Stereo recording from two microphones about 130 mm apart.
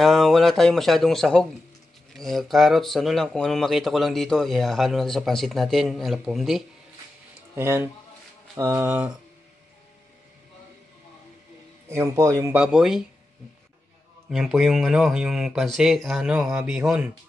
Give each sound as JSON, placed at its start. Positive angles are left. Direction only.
{"t": 0.0, "sound": "speech", "side_deg": 0}
{"t": 7.5, "sound": "speech", "side_deg": -20}
{"t": 11.9, "sound": "speech", "side_deg": -20}
{"t": 12.5, "sound": "speech", "side_deg": -5}
{"t": 14.3, "sound": "speech", "side_deg": 0}